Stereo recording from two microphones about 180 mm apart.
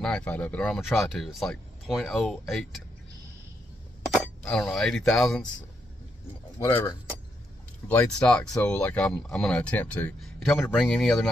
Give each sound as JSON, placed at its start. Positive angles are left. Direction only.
{"t": 0.0, "sound": "speech", "side_deg": 5}
{"t": 4.1, "sound": "speech", "side_deg": 0}
{"t": 6.6, "sound": "speech", "side_deg": 15}